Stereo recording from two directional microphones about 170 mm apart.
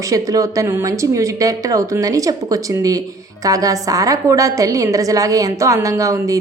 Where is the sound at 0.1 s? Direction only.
20° right (ahead or behind).